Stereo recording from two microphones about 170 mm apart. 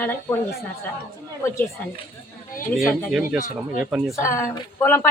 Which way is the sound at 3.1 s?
5° right (ahead or behind).